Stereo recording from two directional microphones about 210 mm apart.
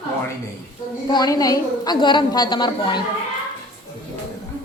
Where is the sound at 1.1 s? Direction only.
20° left (ahead or behind).